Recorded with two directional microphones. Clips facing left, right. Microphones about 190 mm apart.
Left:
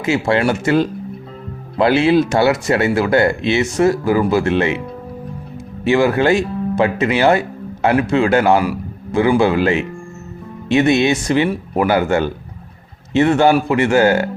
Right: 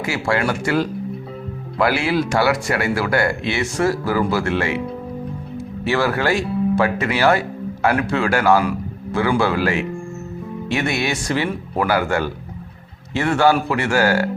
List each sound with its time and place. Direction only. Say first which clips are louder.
0.0 s speech: left 5 dB; 25° left (ahead or behind)
5.8 s speech: left 6 dB; 20° left (ahead or behind)